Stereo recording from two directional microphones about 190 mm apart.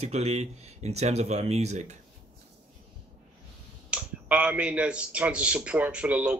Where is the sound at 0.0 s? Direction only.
35° right (ahead or behind).